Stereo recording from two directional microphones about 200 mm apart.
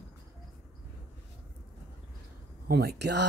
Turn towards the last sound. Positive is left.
turn(degrees=-55)  # may be behind; listen again after turning